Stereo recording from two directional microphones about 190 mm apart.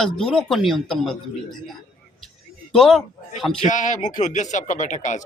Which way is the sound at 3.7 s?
40° left (ahead or behind).